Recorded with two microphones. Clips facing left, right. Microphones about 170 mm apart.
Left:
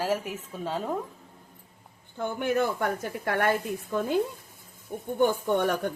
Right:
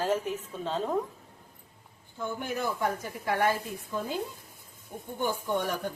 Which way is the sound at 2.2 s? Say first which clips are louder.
Left 6 dB; 65° left (ahead or behind).